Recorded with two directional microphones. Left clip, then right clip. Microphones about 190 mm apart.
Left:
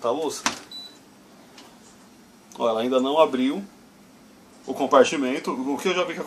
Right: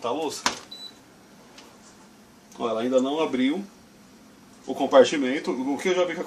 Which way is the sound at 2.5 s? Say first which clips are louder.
Left 2 dB; 15° left (ahead or behind).